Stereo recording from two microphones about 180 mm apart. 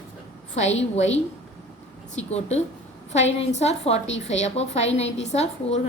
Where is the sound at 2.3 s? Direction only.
35° left (ahead or behind).